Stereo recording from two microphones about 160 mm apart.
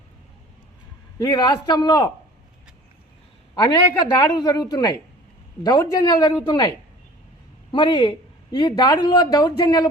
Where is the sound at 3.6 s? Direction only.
25° left (ahead or behind).